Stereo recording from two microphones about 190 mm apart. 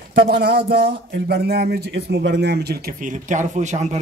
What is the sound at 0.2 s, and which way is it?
Speech, 55° right (ahead or behind).